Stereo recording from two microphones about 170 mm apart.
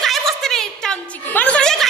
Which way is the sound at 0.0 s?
Centre (ahead or behind).